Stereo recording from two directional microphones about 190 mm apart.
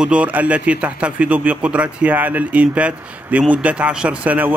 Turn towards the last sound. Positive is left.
turn(degrees=-10)  # may be behind; listen again after turning